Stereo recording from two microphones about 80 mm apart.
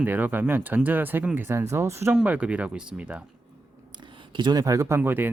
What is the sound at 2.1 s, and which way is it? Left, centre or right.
Speech, centre.